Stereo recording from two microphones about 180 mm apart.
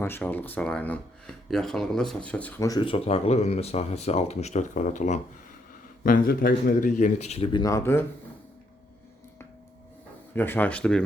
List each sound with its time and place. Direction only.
0.0 s speech: 10° left (ahead or behind)
2.6 s speech: 20° left (ahead or behind)
7.6 s speech: 15° left (ahead or behind)
10.3 s speech: 10° left (ahead or behind)